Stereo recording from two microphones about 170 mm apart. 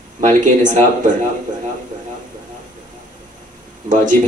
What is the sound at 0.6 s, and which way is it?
Speech, 50° right (ahead or behind).